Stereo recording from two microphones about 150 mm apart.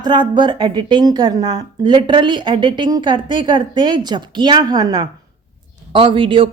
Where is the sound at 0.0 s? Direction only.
30° right (ahead or behind).